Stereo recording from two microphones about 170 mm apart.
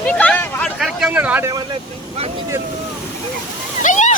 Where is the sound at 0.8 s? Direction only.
Centre (ahead or behind).